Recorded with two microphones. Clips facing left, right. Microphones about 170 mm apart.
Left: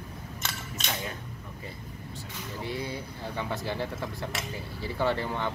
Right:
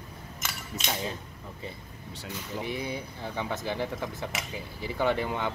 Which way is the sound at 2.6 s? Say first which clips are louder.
Left 1 dB; 20° right (ahead or behind).